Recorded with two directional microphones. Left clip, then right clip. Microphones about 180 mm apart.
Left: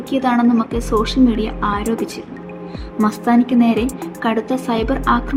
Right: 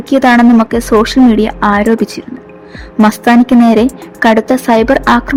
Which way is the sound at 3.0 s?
50° right (ahead or behind).